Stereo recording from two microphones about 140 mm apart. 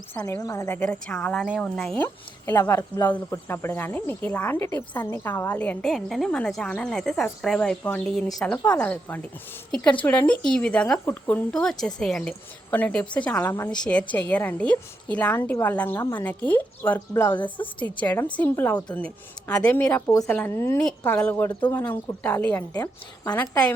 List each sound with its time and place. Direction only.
0.1 s speech: 15° left (ahead or behind)
2.6 s speech: 15° left (ahead or behind)
17.3 s a woman's voice: 35° left (ahead or behind)
17.7 s speech: 10° left (ahead or behind)
22.7 s a woman's voice: 25° left (ahead or behind)